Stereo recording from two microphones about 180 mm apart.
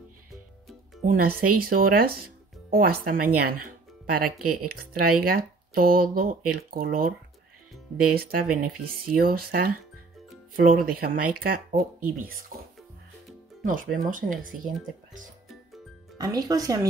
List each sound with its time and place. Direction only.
1.0 s speech: 55° right (ahead or behind)
8.1 s speech: 55° right (ahead or behind)
13.7 s speech: 50° right (ahead or behind)
16.2 s speech: 20° right (ahead or behind)